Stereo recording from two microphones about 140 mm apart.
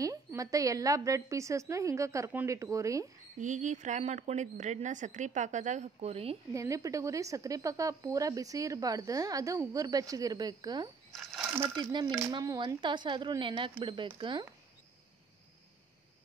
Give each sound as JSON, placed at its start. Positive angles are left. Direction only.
{"t": 0.0, "sound": "speech", "side_deg": -25}
{"t": 3.3, "sound": "speech", "side_deg": -60}
{"t": 6.5, "sound": "speech", "side_deg": -20}
{"t": 11.1, "sound": "speech", "side_deg": 0}
{"t": 11.7, "sound": "a woman's voice", "side_deg": -30}